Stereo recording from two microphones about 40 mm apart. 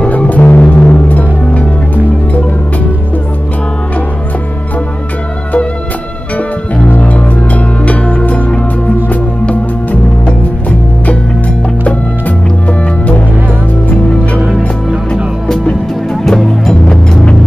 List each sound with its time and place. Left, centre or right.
0.3 s music: left
7.0 s music: left
11.8 s music: left
16.1 s music: centre